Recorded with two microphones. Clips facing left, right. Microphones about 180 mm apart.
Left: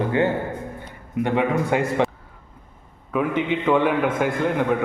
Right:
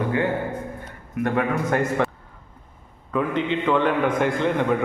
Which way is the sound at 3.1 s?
10° left (ahead or behind).